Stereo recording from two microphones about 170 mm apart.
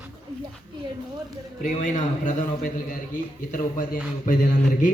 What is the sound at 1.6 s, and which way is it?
A man's voice, 50° left (ahead or behind).